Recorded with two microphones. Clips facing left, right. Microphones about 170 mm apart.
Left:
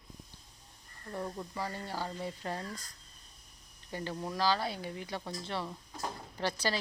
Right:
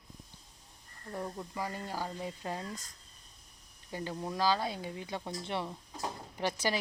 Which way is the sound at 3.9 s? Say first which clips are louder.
Even; 15° right (ahead or behind).